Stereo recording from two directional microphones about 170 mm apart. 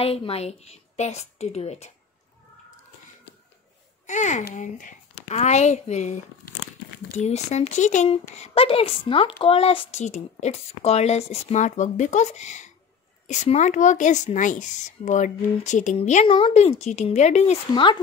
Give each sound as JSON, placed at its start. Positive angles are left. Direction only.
{"t": 0.0, "sound": "speech", "side_deg": 35}
{"t": 4.0, "sound": "a child's voice", "side_deg": 45}
{"t": 7.2, "sound": "speech", "side_deg": 40}